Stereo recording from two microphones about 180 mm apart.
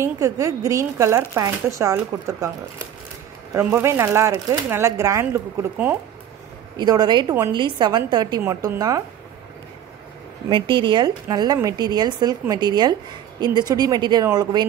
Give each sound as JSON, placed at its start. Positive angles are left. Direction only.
{"t": 0.0, "sound": "speech", "side_deg": -20}
{"t": 3.5, "sound": "speech", "side_deg": -15}
{"t": 6.8, "sound": "a woman's voice", "side_deg": -25}
{"t": 10.5, "sound": "a woman's voice", "side_deg": -25}